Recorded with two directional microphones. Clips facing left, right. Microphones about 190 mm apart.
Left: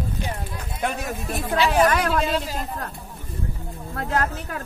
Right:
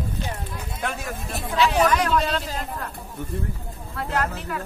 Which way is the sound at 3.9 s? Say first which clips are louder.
Left 1 dB; 45° left (ahead or behind).